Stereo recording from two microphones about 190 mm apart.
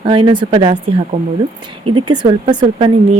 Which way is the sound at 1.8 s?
25° right (ahead or behind).